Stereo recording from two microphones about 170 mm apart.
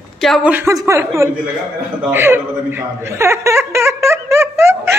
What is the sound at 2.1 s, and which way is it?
Chuckle, 15° right (ahead or behind).